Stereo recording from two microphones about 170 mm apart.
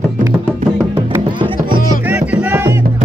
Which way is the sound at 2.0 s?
10° right (ahead or behind).